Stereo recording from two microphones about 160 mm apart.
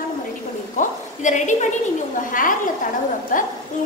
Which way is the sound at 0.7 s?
50° left (ahead or behind).